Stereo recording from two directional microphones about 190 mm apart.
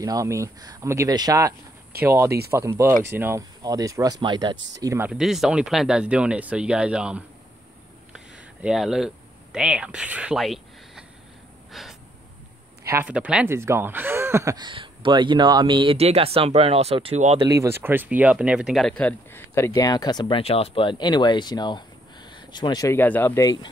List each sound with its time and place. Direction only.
0.0 s speech: 15° right (ahead or behind)
8.1 s a sound: 5° right (ahead or behind)
11.7 s gasp: centre (ahead or behind)
12.8 s speech: 10° right (ahead or behind); by 17.4 s 35° right (ahead or behind)
17.4 s speech: 15° right (ahead or behind); by 23.7 s 20° left (ahead or behind)